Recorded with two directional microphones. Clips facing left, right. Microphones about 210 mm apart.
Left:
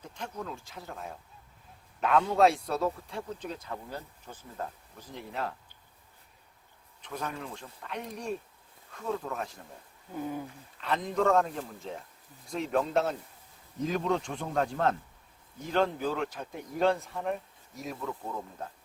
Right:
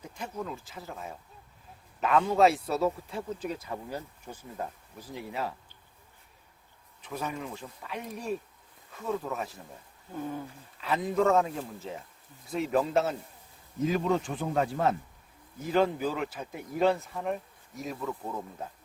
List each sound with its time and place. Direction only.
0.0 s speech: 5° right (ahead or behind)
7.0 s speech: 5° right (ahead or behind)
10.2 s a sound: 10° left (ahead or behind)
10.8 s speech: 5° right (ahead or behind)